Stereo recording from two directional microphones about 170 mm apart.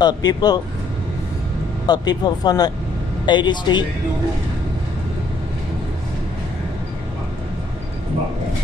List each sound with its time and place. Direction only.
0.0 s speech: 25° left (ahead or behind)
1.9 s speech: 25° left (ahead or behind)